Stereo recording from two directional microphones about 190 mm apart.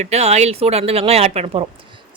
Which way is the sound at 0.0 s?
35° right (ahead or behind).